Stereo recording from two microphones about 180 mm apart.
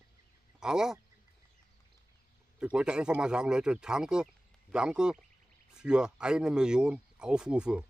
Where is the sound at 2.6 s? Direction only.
5° right (ahead or behind).